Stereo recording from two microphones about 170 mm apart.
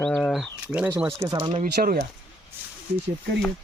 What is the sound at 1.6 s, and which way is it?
Speech, 65° right (ahead or behind).